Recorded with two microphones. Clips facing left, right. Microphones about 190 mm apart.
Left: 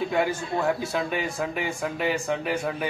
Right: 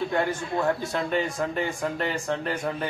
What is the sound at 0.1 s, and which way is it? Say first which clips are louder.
Speech: left 1 dB; 10° left (ahead or behind).